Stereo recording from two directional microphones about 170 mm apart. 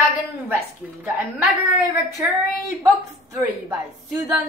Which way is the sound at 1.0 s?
10° right (ahead or behind).